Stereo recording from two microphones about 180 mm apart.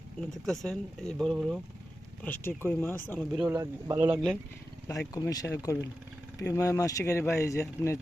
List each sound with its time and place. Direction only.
0.4 s speech: centre (ahead or behind)
2.2 s speech: 10° left (ahead or behind)
3.3 s speech: 5° right (ahead or behind)
4.9 s speech: 15° left (ahead or behind)